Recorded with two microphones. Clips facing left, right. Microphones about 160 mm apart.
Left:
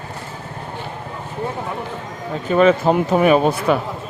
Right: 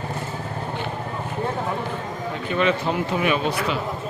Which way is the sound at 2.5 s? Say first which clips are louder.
Left 8 dB; 45° left (ahead or behind).